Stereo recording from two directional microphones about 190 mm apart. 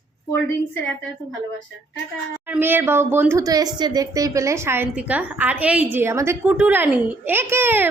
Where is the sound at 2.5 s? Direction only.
10° right (ahead or behind).